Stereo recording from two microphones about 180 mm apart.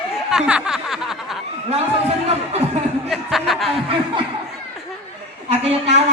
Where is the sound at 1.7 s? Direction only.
35° right (ahead or behind).